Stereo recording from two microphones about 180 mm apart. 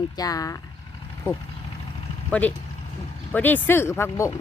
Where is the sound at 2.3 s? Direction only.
5° left (ahead or behind).